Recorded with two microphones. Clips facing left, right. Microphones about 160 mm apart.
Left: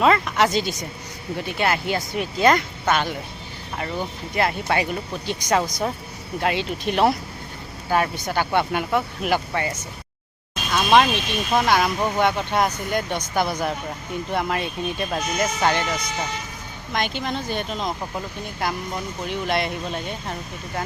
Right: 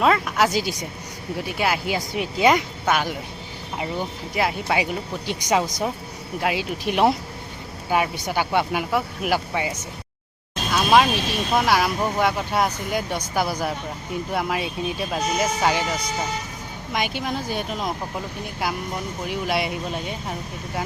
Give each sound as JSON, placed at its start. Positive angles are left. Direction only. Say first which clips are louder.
{"t": 0.0, "sound": "speech", "louder": "left 1 dB", "side_deg": -5}
{"t": 10.7, "sound": "vehicle", "louder": "even", "side_deg": -5}
{"t": 11.5, "sound": "speech", "louder": "left 1 dB", "side_deg": -5}